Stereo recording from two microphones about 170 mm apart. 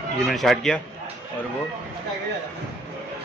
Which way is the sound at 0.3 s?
Centre (ahead or behind).